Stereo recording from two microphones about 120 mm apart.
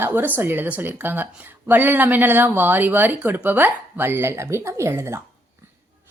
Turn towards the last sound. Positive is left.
turn(degrees=-20)  # may be behind; listen again after turning